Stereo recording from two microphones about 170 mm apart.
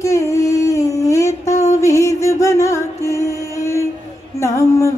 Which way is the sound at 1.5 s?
40° left (ahead or behind).